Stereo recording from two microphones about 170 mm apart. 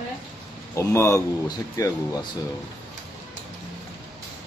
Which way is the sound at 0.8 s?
15° left (ahead or behind).